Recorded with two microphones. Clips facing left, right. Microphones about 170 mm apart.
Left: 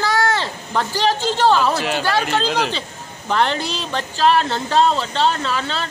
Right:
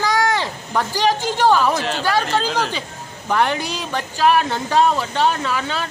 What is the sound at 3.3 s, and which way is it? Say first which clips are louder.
A man's voice: even; 10° right (ahead or behind).